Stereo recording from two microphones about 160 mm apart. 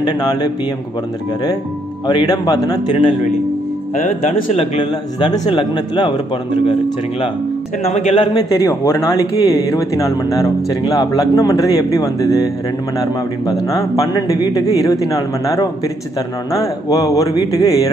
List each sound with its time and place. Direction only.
0.2 s a man's voice: 25° left (ahead or behind)
2.0 s a man's voice: 25° left (ahead or behind)
3.9 s speech: 55° left (ahead or behind)
5.2 s a man's voice: 25° left (ahead or behind)
7.8 s a man's voice: 40° left (ahead or behind)
8.5 s a man's voice: 20° left (ahead or behind)